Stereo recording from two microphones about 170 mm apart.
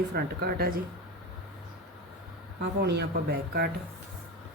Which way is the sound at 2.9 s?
70° right (ahead or behind).